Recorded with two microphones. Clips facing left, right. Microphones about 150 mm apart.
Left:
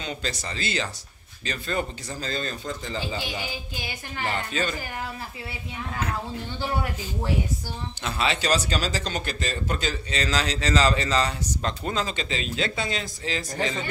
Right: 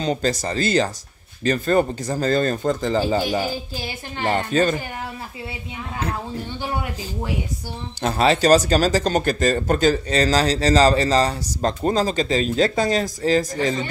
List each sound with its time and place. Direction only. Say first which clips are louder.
0.0 s speech: right 10 dB; 40° right (ahead or behind)
8.0 s speech: right 9 dB; 40° right (ahead or behind)